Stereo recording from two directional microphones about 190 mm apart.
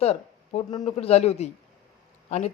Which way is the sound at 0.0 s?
35° left (ahead or behind).